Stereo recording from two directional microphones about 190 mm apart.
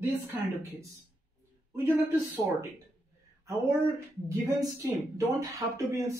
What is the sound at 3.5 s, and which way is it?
A woman's voice, 15° right (ahead or behind).